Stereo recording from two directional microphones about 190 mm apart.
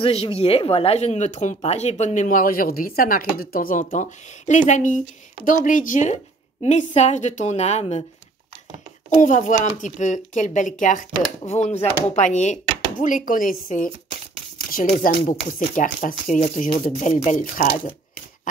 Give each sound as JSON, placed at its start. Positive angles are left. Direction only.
{"t": 0.0, "sound": "speech", "side_deg": 30}
{"t": 9.1, "sound": "speech", "side_deg": 40}